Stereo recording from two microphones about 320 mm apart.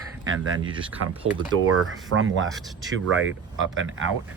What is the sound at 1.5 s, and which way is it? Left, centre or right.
Speech, right.